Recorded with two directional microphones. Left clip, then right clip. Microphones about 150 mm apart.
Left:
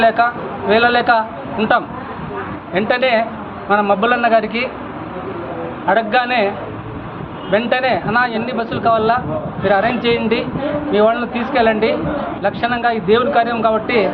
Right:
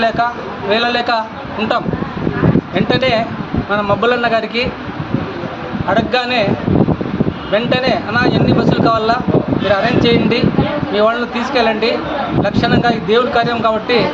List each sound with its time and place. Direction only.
0.7 s speech: 15° right (ahead or behind)
5.9 s speech: 15° right (ahead or behind)
7.5 s speech: 15° right (ahead or behind)